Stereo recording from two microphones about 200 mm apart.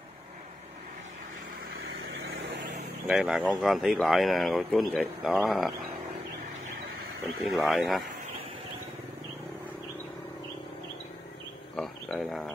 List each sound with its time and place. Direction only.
2.0 s vehicle: 60° right (ahead or behind)
3.1 s speech: centre (ahead or behind)
7.5 s speech: centre (ahead or behind)
11.7 s a sound: centre (ahead or behind)